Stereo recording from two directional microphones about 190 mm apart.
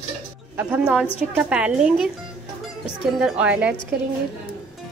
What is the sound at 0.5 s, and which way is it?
A woman's voice, 10° right (ahead or behind).